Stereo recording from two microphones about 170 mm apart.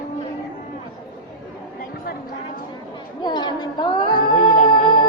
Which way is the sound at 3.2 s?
25° left (ahead or behind).